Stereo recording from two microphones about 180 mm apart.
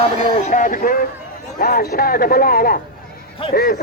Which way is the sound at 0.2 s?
35° left (ahead or behind).